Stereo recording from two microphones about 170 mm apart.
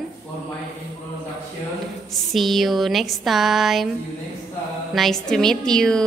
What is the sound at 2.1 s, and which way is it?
Speech, centre (ahead or behind).